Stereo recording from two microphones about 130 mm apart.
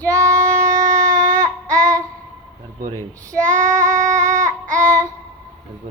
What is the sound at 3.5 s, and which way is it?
Child singing, 80° right.